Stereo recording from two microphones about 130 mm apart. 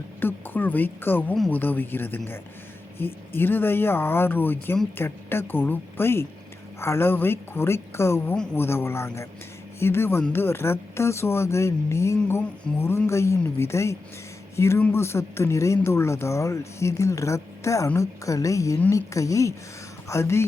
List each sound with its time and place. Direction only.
0.2 s speech: 15° left (ahead or behind)